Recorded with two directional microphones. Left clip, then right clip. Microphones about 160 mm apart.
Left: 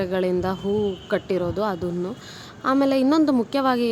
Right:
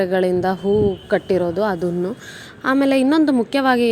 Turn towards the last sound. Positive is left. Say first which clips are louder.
# right 5 dB
turn(degrees=-10)  # may be behind; listen again after turning